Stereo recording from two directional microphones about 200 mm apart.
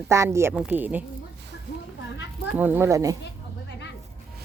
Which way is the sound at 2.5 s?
10° right (ahead or behind).